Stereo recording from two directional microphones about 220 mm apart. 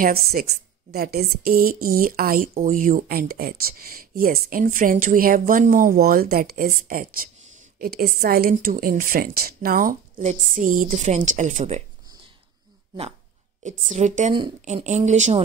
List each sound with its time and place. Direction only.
0.0 s a woman's voice: 45° right (ahead or behind)
13.7 s a woman's voice: 35° right (ahead or behind)